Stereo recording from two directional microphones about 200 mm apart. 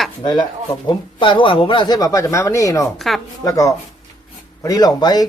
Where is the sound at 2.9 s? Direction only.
Centre (ahead or behind).